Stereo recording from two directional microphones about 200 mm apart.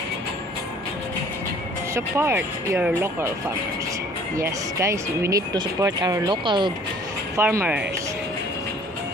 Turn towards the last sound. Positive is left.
turn(degrees=-10)  # may be behind; listen again after turning